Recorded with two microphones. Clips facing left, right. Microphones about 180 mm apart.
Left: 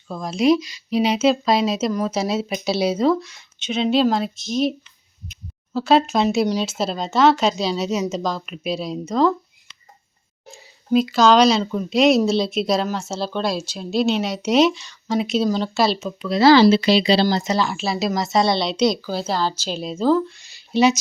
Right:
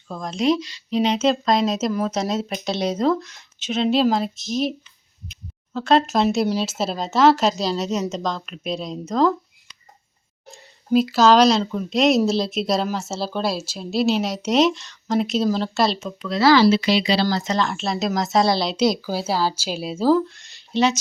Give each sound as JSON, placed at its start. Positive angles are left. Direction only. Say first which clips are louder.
{"t": 0.1, "sound": "speech", "louder": "left 3 dB", "side_deg": 5}
{"t": 5.7, "sound": "speech", "louder": "left 1 dB", "side_deg": 5}
{"t": 10.4, "sound": "speech", "louder": "left 1 dB", "side_deg": 0}
{"t": 16.4, "sound": "speech", "louder": "left 3 dB", "side_deg": 25}
{"t": 17.2, "sound": "speech", "louder": "left 2 dB", "side_deg": 15}